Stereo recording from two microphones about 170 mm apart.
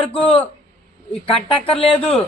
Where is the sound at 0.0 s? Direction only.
30° left (ahead or behind).